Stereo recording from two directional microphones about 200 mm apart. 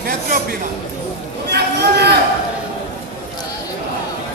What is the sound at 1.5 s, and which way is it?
Chatter, 55° right (ahead or behind).